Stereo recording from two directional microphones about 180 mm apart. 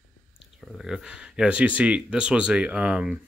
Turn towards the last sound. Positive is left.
turn(degrees=-5)  # may be behind; listen again after turning